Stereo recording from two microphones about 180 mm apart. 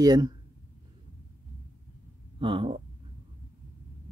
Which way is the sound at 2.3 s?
30° right (ahead or behind).